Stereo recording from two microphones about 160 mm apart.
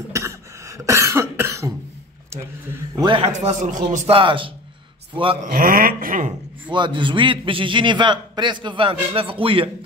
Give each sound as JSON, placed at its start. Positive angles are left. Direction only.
{"t": 0.1, "sound": "cough", "side_deg": -20}
{"t": 3.0, "sound": "a man's voice", "side_deg": -30}
{"t": 3.3, "sound": "a man's voice", "side_deg": -50}
{"t": 4.1, "sound": "a man's voice", "side_deg": -30}
{"t": 5.4, "sound": "a sound", "side_deg": -60}
{"t": 6.7, "sound": "a man's voice", "side_deg": -30}